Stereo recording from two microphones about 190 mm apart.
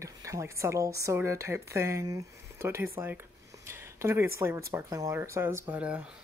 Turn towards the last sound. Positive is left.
turn(degrees=-5)  # may be behind; listen again after turning